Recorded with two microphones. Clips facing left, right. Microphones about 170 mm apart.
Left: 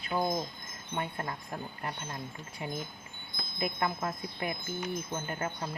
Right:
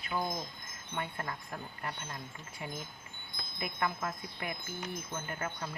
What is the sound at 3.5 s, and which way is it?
Speech, 20° left (ahead or behind).